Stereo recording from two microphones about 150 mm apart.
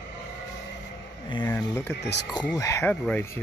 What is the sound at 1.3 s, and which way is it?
Speech, 20° left (ahead or behind).